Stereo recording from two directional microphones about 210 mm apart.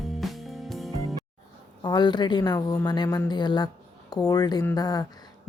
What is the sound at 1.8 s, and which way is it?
A woman's voice, 20° left (ahead or behind).